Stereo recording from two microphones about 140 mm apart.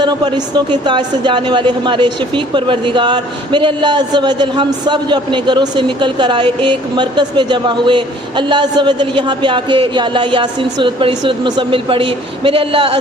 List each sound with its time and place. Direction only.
0.0 s a woman's voice: 30° right (ahead or behind)